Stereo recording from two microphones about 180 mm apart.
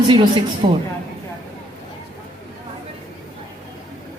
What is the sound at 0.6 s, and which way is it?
Speech, 30° right (ahead or behind).